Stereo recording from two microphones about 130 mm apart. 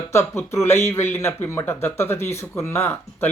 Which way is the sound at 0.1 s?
20° left (ahead or behind).